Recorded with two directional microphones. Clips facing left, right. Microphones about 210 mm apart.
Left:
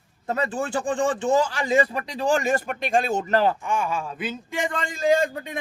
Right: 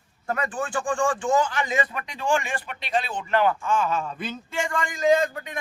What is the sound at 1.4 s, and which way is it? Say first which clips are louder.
Speech: left 4 dB; 35° left (ahead or behind).